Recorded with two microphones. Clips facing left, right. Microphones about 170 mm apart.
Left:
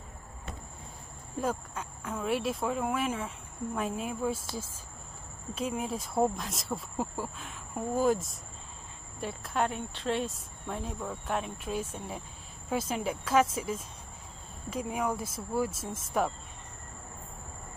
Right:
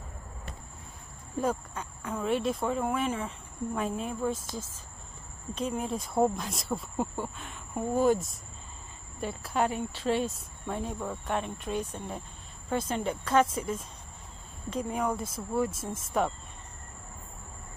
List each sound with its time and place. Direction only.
1.4 s speech: centre (ahead or behind)